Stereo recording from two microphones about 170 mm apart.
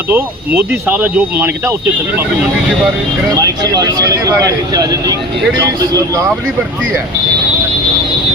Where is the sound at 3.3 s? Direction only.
20° right (ahead or behind).